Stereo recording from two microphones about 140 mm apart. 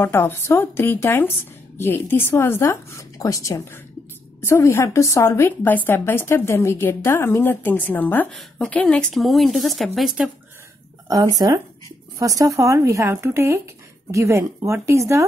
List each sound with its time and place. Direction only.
0.0 s a woman's voice: 15° left (ahead or behind); by 10.3 s 5° right (ahead or behind)
11.1 s speech: 25° right (ahead or behind)